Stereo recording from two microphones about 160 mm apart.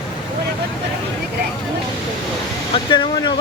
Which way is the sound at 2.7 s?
30° left (ahead or behind).